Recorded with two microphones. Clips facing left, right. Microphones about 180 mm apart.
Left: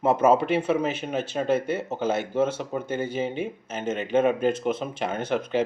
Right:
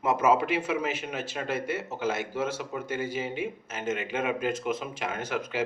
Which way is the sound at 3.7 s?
30° left (ahead or behind).